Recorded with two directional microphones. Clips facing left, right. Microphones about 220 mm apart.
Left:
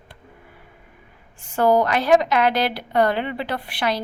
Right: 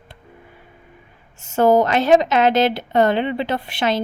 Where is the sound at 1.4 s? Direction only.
20° right (ahead or behind).